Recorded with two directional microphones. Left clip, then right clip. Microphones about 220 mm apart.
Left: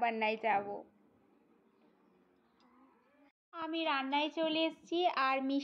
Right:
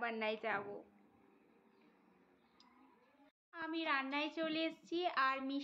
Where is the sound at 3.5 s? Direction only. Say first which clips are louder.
Left 4 dB; 20° left (ahead or behind).